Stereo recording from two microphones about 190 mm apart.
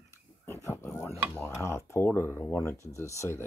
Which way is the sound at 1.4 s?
15° left (ahead or behind).